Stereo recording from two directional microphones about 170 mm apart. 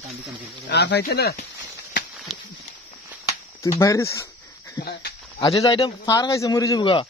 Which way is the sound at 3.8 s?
15° left (ahead or behind).